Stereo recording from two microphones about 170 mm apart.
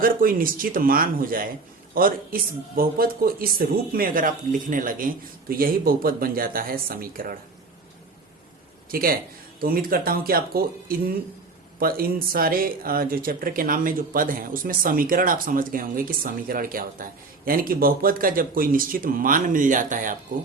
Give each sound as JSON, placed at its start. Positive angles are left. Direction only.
{"t": 0.0, "sound": "speech", "side_deg": -55}
{"t": 8.9, "sound": "a man's voice", "side_deg": -60}